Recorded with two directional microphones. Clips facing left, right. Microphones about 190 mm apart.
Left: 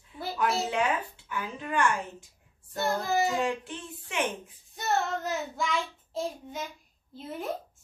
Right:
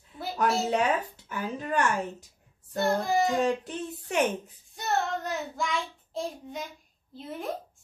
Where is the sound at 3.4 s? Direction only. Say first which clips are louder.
Right 4 dB; 40° right (ahead or behind).